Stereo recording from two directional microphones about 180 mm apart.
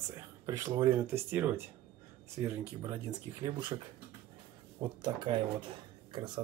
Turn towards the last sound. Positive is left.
turn(degrees=-25)  # may be behind; listen again after turning